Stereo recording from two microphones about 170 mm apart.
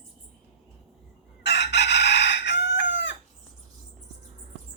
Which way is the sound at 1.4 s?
80° left.